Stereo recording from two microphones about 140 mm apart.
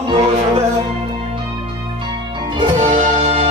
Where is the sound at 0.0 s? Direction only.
45° right (ahead or behind).